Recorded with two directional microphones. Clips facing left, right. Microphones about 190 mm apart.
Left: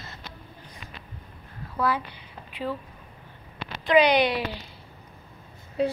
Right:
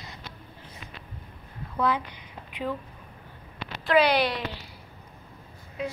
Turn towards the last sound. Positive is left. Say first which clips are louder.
# left 8 dB
turn(degrees=35)  # may be behind; listen again after turning